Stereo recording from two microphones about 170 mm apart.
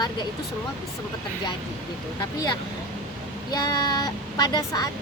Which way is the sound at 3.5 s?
25° left (ahead or behind).